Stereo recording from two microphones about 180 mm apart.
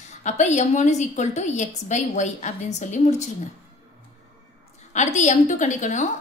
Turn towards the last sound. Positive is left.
turn(degrees=40)  # may be behind; listen again after turning